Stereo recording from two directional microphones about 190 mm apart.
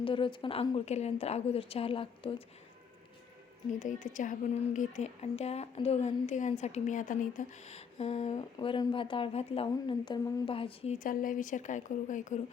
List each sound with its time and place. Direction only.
0.0 s a woman's voice: 25° left (ahead or behind)
3.8 s a woman's voice: 40° left (ahead or behind)
8.5 s a woman's voice: 25° left (ahead or behind)
10.9 s speech: 45° left (ahead or behind)